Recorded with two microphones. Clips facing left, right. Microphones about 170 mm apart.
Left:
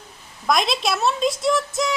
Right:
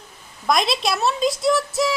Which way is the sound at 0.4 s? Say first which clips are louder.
Even; centre (ahead or behind).